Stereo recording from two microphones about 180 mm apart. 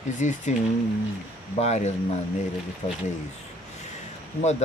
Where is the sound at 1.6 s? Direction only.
35° left (ahead or behind).